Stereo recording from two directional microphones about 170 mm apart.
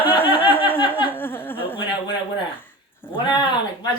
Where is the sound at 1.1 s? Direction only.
10° left (ahead or behind).